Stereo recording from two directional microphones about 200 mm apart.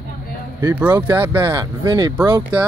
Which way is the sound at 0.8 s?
10° right (ahead or behind).